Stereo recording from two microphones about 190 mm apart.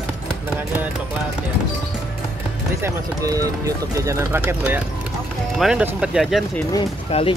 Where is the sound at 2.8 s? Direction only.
20° right (ahead or behind).